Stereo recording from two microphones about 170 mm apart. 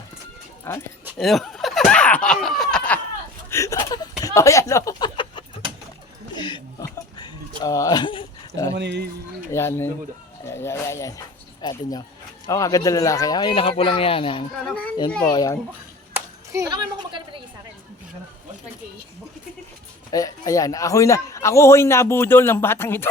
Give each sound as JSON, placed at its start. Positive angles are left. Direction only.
{"t": 0.6, "sound": "speech", "side_deg": 15}
{"t": 1.2, "sound": "a sound", "side_deg": 0}
{"t": 3.5, "sound": "a sound", "side_deg": 20}
{"t": 4.4, "sound": "speech", "side_deg": 20}
{"t": 6.3, "sound": "a sound", "side_deg": 25}
{"t": 8.7, "sound": "speech", "side_deg": -85}
{"t": 9.5, "sound": "a man's voice", "side_deg": 15}
{"t": 16.1, "sound": "clapping", "side_deg": -15}
{"t": 20.1, "sound": "a man's voice", "side_deg": 20}